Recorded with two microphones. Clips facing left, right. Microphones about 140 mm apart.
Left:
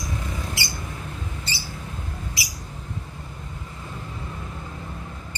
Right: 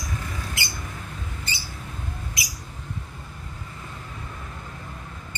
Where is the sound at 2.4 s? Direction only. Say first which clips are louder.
Even; 30° left (ahead or behind).